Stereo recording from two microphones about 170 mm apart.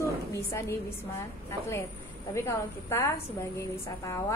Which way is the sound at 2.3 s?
15° left (ahead or behind).